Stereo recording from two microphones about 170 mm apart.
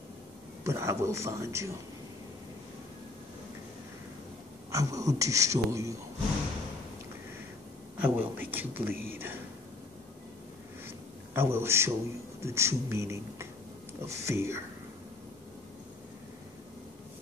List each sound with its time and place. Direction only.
0.7 s speech: 15° right (ahead or behind)
4.6 s speech: 20° right (ahead or behind)
8.0 s speech: 10° right (ahead or behind)
11.3 s speech: 15° right (ahead or behind)